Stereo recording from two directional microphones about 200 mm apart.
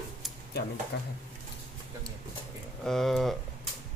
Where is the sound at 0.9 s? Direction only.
55° left (ahead or behind).